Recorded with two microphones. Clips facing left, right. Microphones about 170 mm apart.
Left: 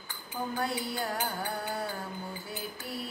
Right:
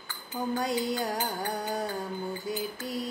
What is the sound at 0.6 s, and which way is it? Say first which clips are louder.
Music: right 4 dB; 20° right (ahead or behind).